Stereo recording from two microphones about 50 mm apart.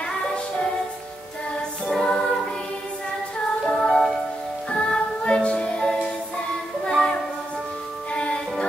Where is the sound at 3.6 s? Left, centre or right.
Centre.